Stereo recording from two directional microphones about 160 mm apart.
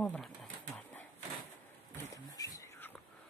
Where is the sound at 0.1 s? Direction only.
5° left (ahead or behind).